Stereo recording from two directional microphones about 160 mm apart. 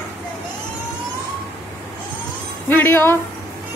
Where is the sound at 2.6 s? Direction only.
15° left (ahead or behind).